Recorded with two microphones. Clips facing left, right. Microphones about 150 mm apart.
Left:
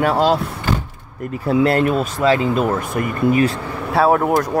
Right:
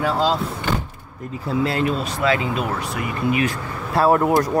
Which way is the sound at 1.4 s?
60° left (ahead or behind).